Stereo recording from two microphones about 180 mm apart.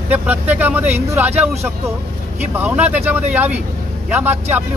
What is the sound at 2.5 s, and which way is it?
Speech, 10° right (ahead or behind).